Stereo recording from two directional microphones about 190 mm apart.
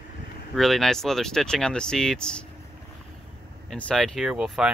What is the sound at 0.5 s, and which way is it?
Speech, centre (ahead or behind).